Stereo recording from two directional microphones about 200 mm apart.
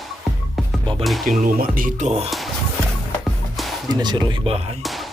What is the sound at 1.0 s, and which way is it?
Speech, centre (ahead or behind).